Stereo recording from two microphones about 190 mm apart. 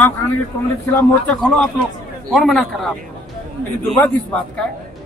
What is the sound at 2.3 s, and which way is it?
A man's voice, centre (ahead or behind).